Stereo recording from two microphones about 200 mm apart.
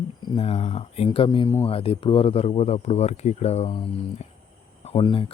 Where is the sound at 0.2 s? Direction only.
30° left (ahead or behind).